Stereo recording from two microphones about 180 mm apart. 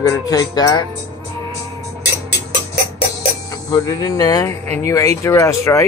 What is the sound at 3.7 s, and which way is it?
Speech, 20° left (ahead or behind).